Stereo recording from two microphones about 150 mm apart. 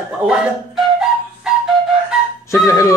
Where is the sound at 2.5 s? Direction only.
20° left (ahead or behind).